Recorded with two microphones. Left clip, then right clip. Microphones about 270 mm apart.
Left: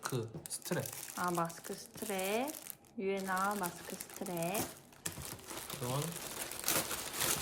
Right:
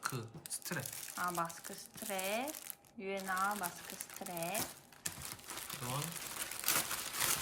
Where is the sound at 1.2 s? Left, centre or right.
Centre.